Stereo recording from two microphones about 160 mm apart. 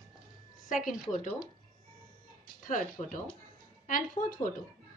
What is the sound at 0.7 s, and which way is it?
Speech, 55° left (ahead or behind).